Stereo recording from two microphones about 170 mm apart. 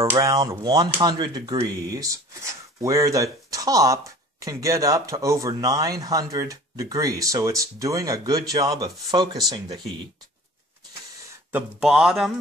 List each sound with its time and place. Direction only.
0.1 s speech: 20° right (ahead or behind)
11.5 s speech: 5° right (ahead or behind)